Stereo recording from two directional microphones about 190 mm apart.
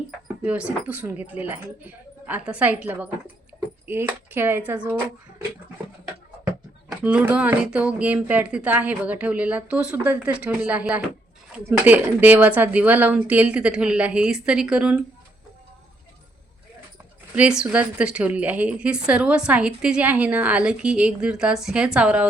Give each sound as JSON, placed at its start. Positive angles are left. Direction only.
{"t": 0.4, "sound": "a woman's voice", "side_deg": -5}
{"t": 7.0, "sound": "a woman's voice", "side_deg": -5}
{"t": 17.3, "sound": "a woman's voice", "side_deg": -5}